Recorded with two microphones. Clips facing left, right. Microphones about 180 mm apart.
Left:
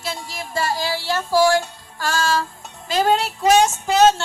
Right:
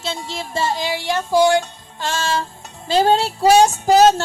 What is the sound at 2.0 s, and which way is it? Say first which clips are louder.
Music: left 1 dB; 25° right (ahead or behind).